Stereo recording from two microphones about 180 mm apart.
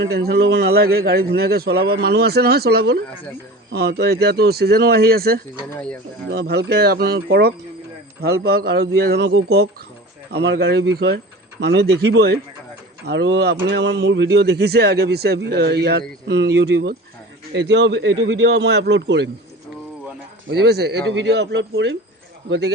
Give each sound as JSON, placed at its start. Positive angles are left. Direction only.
{"t": 0.0, "sound": "a man's voice", "side_deg": -65}
{"t": 5.7, "sound": "speech", "side_deg": 5}
{"t": 6.3, "sound": "a man's voice", "side_deg": -65}
{"t": 20.5, "sound": "a man's voice", "side_deg": -65}